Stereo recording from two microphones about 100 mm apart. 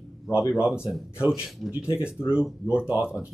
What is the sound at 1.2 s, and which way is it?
Speech, 10° right (ahead or behind).